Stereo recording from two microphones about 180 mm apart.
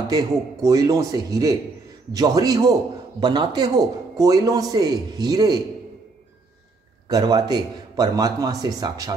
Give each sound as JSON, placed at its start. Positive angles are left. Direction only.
{"t": 0.1, "sound": "a man's voice", "side_deg": -20}
{"t": 7.1, "sound": "a man's voice", "side_deg": -20}